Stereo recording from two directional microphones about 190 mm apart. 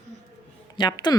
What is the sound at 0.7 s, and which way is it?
Speech, 20° left (ahead or behind).